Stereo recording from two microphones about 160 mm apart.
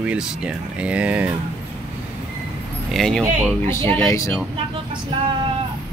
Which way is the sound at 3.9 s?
15° left (ahead or behind).